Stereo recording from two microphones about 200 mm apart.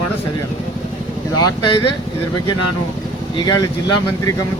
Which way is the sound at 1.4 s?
20° left (ahead or behind).